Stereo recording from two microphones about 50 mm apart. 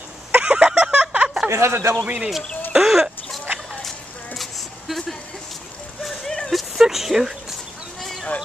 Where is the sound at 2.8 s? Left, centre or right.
Centre.